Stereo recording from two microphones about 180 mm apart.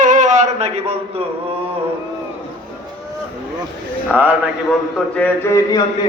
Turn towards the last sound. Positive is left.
turn(degrees=15)  # may be behind; listen again after turning